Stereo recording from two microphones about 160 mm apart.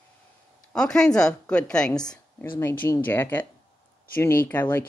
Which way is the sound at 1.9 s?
25° left (ahead or behind).